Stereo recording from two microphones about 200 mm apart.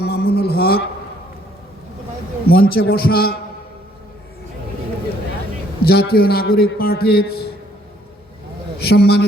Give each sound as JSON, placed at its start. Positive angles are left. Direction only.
{"t": 0.0, "sound": "a sound", "side_deg": 50}
{"t": 2.5, "sound": "a man's voice", "side_deg": 50}
{"t": 5.8, "sound": "a man's voice", "side_deg": 50}
{"t": 8.8, "sound": "a man's voice", "side_deg": 50}